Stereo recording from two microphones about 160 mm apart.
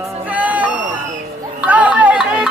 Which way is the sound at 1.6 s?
10° right (ahead or behind).